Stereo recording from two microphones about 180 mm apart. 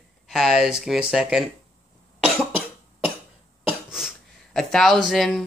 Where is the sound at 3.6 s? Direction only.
5° right (ahead or behind).